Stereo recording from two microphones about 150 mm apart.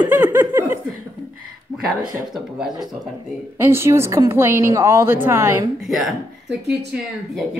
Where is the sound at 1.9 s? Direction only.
Centre (ahead or behind).